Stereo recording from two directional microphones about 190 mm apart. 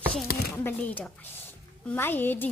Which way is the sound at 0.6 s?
10° left (ahead or behind).